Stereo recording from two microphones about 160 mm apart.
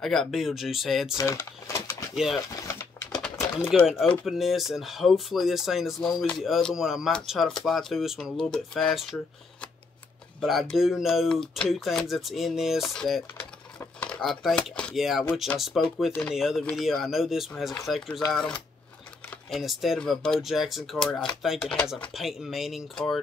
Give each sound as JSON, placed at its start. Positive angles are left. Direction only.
{"t": 0.0, "sound": "speech", "side_deg": 0}
{"t": 1.1, "sound": "speech", "side_deg": 20}
{"t": 2.1, "sound": "speech", "side_deg": 0}
{"t": 2.6, "sound": "typing", "side_deg": 20}
{"t": 3.7, "sound": "speech", "side_deg": -5}